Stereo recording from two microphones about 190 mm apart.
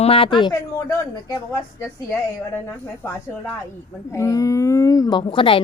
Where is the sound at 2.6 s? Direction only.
15° left (ahead or behind).